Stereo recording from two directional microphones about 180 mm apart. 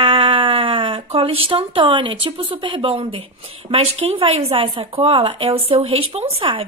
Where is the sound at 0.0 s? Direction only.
30° right (ahead or behind).